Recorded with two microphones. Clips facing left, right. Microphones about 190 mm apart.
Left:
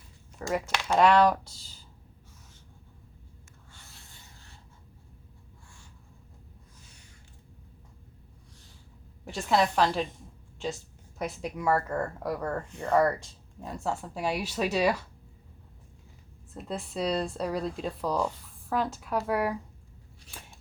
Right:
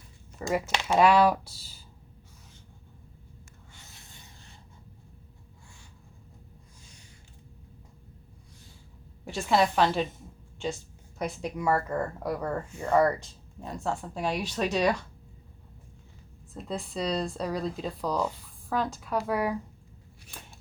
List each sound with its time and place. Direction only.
0.3 s speech: 5° right (ahead or behind)
3.7 s rub: 20° right (ahead or behind)
9.2 s speech: centre (ahead or behind)
16.6 s speech: centre (ahead or behind)